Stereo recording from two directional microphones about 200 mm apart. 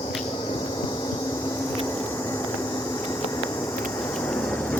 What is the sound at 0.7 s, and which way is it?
Vehicle, 20° left (ahead or behind).